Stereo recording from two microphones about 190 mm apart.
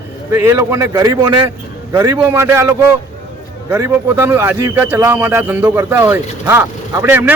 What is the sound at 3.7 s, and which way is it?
A man's voice, 15° right (ahead or behind).